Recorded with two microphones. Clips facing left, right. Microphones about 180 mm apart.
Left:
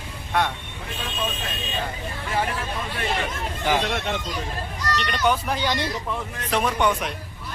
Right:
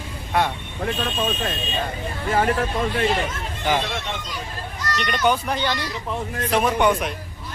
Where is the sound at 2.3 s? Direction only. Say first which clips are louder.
Right 6 dB; 50° right (ahead or behind).